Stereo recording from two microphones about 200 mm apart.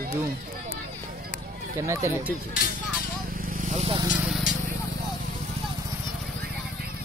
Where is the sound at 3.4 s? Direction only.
40° right (ahead or behind).